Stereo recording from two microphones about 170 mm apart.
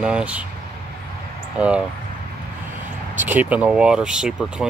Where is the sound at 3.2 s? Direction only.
10° right (ahead or behind).